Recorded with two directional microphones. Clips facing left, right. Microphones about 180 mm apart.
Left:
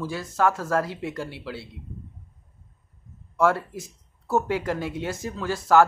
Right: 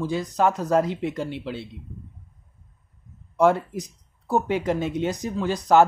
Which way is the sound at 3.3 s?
20° right (ahead or behind).